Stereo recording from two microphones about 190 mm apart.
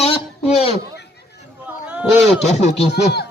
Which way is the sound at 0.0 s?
30° left (ahead or behind).